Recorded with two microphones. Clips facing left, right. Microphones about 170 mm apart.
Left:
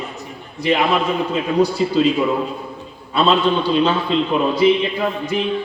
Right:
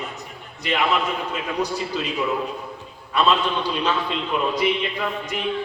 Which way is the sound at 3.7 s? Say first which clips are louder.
Left 7 dB; 30° left (ahead or behind).